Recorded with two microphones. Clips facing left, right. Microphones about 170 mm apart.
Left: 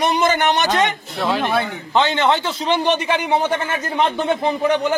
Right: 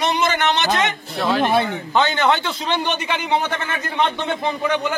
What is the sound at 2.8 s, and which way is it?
A man's voice, 35° left (ahead or behind).